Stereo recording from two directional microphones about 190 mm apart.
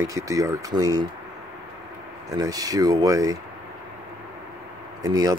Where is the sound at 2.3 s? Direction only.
20° right (ahead or behind).